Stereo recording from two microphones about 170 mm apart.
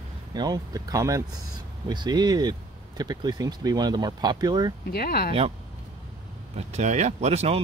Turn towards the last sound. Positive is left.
turn(degrees=-35)  # may be behind; listen again after turning